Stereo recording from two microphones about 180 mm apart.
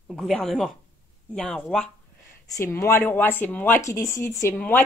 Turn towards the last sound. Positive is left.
turn(degrees=10)  # may be behind; listen again after turning